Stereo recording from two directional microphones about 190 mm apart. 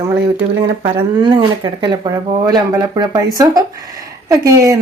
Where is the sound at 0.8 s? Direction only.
25° right (ahead or behind).